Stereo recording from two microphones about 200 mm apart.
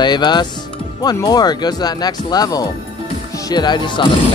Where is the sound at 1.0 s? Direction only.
20° left (ahead or behind).